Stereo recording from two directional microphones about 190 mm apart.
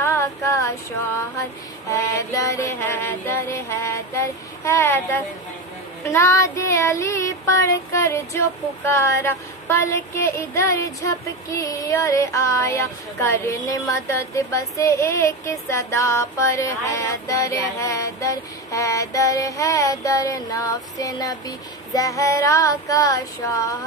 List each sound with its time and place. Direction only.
0.0 s female singing: 15° left (ahead or behind)
1.9 s child singing: 15° left (ahead or behind)